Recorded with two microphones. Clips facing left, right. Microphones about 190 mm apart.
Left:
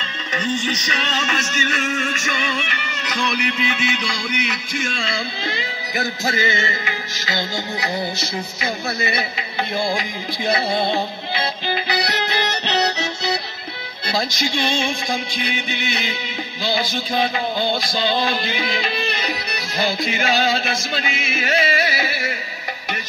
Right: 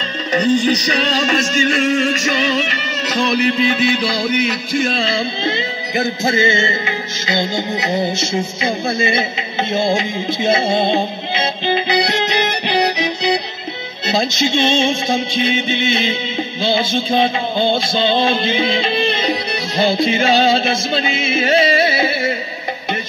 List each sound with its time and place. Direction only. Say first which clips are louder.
0.3 s music: right 9 dB; 35° right (ahead or behind)